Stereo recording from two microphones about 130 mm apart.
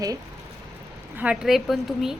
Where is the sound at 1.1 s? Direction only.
10° right (ahead or behind).